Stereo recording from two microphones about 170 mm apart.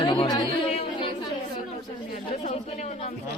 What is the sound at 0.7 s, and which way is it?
Chatter, 35° left (ahead or behind).